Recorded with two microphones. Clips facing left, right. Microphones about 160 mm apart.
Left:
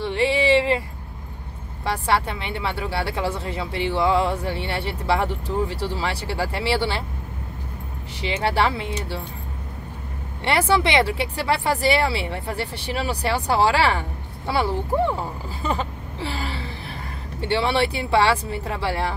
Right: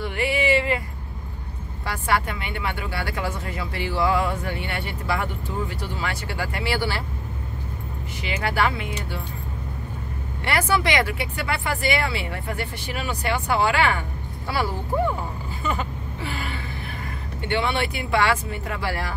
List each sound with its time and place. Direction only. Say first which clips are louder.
0.0 s a sound: left 3 dB; 30° left (ahead or behind)
1.9 s speech: left 2 dB; 30° left (ahead or behind)
8.2 s speech: left 2 dB; 30° left (ahead or behind)
10.7 s speech: left 3 dB; 25° left (ahead or behind)
15.6 s vehicle: left 2 dB; 30° left (ahead or behind)
17.4 s speech: left 3 dB; 30° left (ahead or behind)